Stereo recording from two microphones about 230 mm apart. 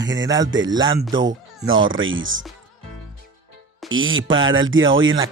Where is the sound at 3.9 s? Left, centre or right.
Right.